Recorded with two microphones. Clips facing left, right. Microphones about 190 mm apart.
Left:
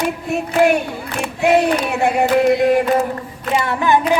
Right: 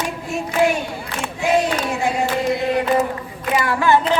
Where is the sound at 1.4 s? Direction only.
60° left (ahead or behind).